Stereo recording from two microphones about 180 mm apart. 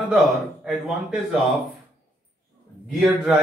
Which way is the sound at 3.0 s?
5° right (ahead or behind).